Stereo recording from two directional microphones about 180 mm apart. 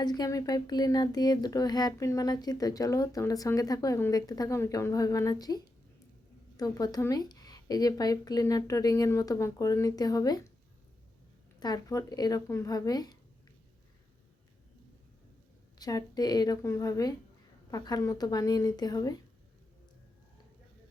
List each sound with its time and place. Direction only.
0.0 s speech: 20° left (ahead or behind)
11.6 s speech: 20° left (ahead or behind)
15.8 s speech: 20° left (ahead or behind)